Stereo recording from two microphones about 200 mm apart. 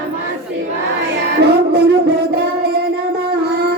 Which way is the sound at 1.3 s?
55° right (ahead or behind).